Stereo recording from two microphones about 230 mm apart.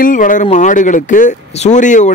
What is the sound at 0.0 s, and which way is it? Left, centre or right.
Speech, left.